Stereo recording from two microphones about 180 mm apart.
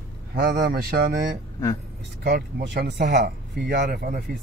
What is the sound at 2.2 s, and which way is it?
Speech, 70° right (ahead or behind).